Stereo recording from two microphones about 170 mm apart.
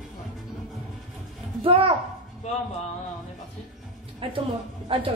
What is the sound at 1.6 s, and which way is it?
Speech, 30° right (ahead or behind).